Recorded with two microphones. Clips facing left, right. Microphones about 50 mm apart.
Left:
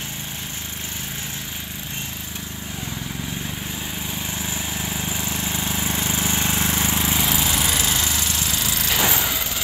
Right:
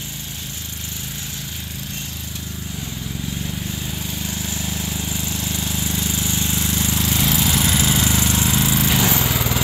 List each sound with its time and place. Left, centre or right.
4.2 s vehicle: left
7.2 s lawn mower: centre